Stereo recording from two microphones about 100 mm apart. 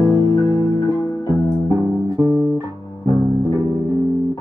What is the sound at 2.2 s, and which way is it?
Music, 30° right (ahead or behind).